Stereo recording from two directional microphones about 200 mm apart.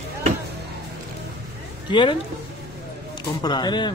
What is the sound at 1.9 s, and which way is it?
Speech, 25° left (ahead or behind).